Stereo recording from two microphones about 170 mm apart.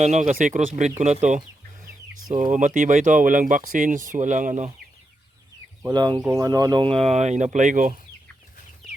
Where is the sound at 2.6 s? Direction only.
50° right (ahead or behind).